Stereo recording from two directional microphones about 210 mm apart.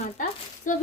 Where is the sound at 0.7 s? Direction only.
40° left (ahead or behind).